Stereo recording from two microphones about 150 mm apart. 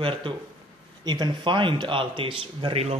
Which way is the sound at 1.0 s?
30° right (ahead or behind).